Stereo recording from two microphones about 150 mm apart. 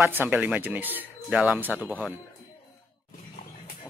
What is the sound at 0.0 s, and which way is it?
Speech, 15° right (ahead or behind).